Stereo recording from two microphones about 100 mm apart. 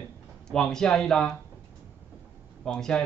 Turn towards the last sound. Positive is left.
turn(degrees=10)  # may be behind; listen again after turning